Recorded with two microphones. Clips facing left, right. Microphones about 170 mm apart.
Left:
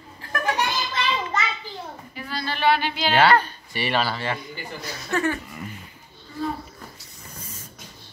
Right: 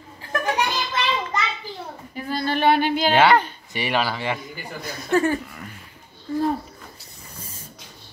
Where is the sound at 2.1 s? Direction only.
45° right (ahead or behind).